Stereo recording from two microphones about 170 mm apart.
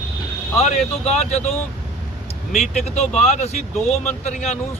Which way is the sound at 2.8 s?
40° left (ahead or behind).